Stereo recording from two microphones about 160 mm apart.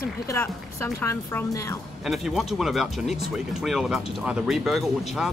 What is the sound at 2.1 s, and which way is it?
Speech, centre (ahead or behind).